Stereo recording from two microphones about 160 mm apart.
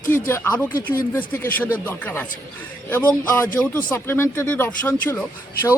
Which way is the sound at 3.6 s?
15° left (ahead or behind).